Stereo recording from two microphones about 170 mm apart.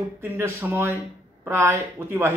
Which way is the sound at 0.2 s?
15° right (ahead or behind).